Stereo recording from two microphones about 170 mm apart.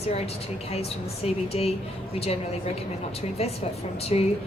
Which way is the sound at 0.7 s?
35° left (ahead or behind).